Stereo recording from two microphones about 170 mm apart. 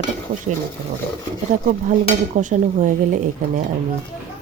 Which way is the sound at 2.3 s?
50° right (ahead or behind).